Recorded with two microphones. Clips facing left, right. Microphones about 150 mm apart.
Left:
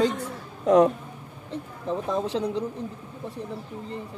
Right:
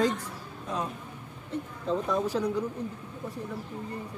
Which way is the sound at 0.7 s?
80° left.